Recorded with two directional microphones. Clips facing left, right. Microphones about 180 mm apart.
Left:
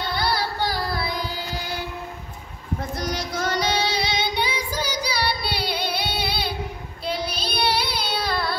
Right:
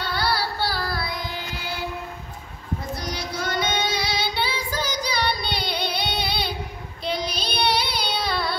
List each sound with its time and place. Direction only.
0.0 s carnatic music: 15° left (ahead or behind)
1.1 s carnatic music: 35° left (ahead or behind)
3.5 s child singing: 30° left (ahead or behind)
4.3 s female singing: 15° left (ahead or behind)
5.5 s child singing: 5° left (ahead or behind)